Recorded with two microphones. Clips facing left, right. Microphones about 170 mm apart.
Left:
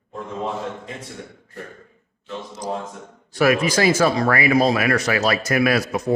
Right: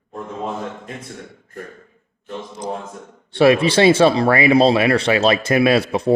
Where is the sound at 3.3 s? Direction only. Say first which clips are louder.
Right 5 dB; 30° right (ahead or behind).